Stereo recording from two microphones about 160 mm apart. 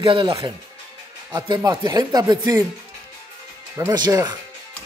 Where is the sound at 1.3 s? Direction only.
25° right (ahead or behind).